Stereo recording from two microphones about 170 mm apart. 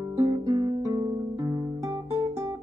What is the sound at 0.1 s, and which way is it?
Music, 20° right (ahead or behind).